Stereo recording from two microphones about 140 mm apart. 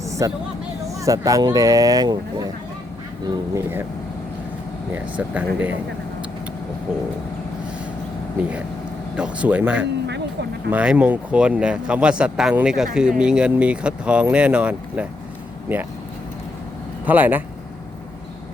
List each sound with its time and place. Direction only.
0.0 s a sound: 20° right (ahead or behind)
0.9 s speech: 25° right (ahead or behind)
5.1 s speech: 10° right (ahead or behind)
9.1 s speech: 10° right (ahead or behind)
17.1 s speech: 10° right (ahead or behind)